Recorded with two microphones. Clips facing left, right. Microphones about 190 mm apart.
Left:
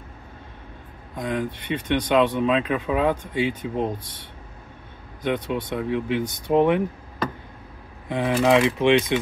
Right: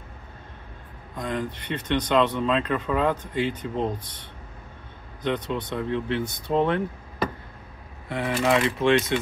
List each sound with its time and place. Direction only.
1.1 s speech: 15° left (ahead or behind)
5.2 s speech: 10° left (ahead or behind)
8.1 s speech: 20° left (ahead or behind)